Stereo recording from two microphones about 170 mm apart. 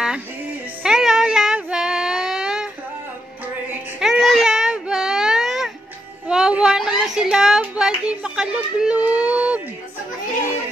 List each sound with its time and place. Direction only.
0.8 s child singing: 5° right (ahead or behind)
4.0 s baby cry: centre (ahead or behind)
6.2 s a sound: 5° right (ahead or behind)